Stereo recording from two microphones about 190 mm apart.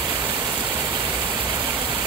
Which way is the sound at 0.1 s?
10° right (ahead or behind).